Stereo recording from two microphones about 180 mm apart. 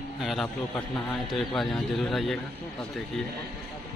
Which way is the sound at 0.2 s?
Centre (ahead or behind).